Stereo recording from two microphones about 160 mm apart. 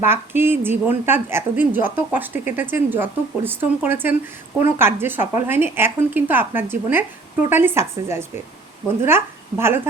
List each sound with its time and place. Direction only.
0.0 s speech: 15° right (ahead or behind)